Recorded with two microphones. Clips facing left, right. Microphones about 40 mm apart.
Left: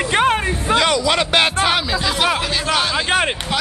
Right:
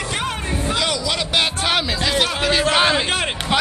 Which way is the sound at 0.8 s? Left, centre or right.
Centre.